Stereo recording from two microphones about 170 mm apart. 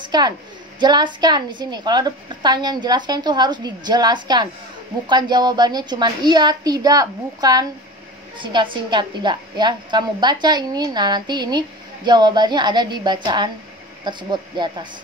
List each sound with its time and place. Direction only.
0.0 s a woman's voice: 25° right (ahead or behind)